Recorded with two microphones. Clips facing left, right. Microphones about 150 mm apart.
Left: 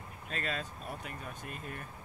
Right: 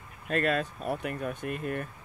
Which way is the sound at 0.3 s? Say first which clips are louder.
Right 11 dB; 55° right (ahead or behind).